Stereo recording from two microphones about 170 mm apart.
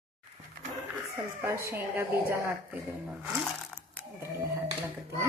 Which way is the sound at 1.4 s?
15° right (ahead or behind).